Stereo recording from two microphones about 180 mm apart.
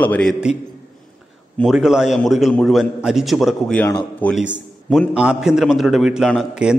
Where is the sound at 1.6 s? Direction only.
5° right (ahead or behind).